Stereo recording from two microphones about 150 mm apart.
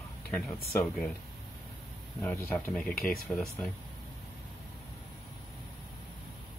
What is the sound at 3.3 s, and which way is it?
Speech, centre (ahead or behind).